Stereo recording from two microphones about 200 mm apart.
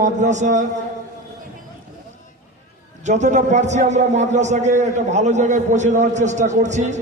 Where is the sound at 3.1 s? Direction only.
35° right (ahead or behind).